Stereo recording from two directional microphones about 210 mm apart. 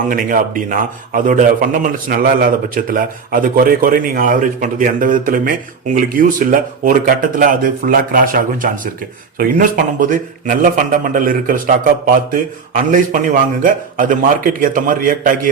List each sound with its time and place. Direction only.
0.1 s a man's voice: 40° right (ahead or behind)